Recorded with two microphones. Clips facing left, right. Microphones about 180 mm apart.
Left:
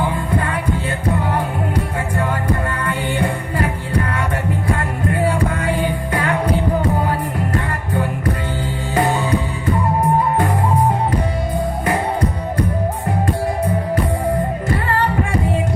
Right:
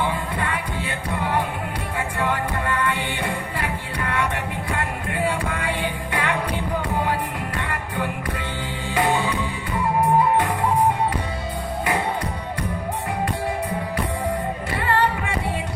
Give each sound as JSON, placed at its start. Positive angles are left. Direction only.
{"t": 0.3, "sound": "music", "side_deg": 40}
{"t": 14.7, "sound": "music", "side_deg": 45}